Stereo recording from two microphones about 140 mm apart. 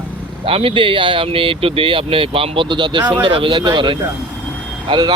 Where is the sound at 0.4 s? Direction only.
40° right (ahead or behind).